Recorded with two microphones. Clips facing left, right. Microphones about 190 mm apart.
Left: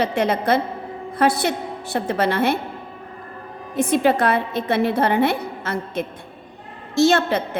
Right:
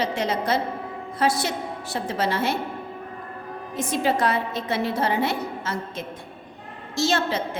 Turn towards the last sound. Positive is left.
turn(degrees=55)  # may be behind; listen again after turning